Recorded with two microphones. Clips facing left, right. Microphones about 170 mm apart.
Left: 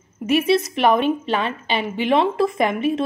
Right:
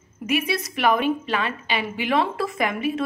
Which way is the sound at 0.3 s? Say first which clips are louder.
Left 7 dB; 25° left (ahead or behind).